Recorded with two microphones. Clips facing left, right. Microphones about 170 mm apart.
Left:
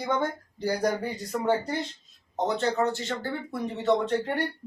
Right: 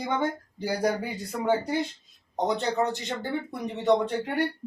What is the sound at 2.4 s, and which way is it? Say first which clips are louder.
Speech: even; 15° right (ahead or behind).